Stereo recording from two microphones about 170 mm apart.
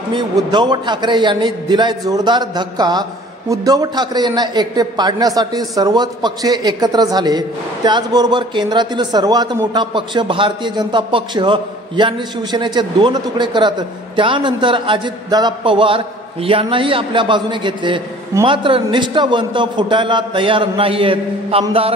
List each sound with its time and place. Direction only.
0.1 s a man's voice: 25° right (ahead or behind)